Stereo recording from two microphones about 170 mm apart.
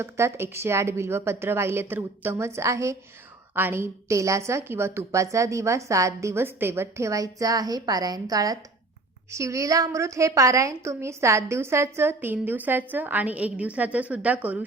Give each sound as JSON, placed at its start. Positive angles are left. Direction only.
{"t": 0.0, "sound": "a woman's voice", "side_deg": -15}